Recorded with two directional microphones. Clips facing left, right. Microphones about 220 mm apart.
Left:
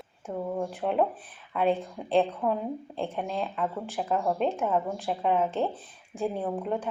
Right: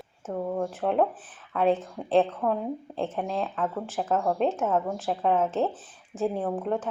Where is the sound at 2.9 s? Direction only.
Centre (ahead or behind).